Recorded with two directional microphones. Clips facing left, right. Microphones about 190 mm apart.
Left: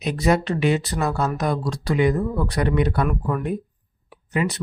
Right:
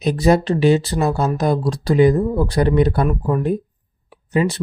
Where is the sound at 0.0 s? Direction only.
35° right (ahead or behind).